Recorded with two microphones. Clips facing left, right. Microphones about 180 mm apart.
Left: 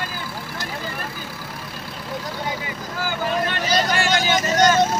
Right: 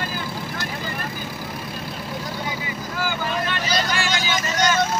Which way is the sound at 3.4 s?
50° left (ahead or behind).